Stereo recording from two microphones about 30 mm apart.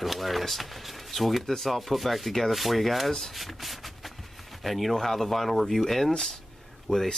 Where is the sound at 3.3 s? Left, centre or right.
Centre.